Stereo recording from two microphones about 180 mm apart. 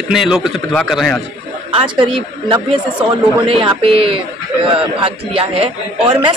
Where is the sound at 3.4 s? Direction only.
30° right (ahead or behind).